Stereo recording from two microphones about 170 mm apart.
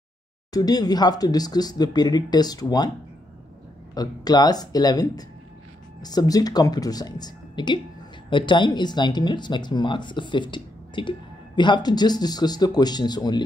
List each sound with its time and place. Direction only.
0.5 s speech: 20° left (ahead or behind)
3.9 s speech: 20° left (ahead or behind)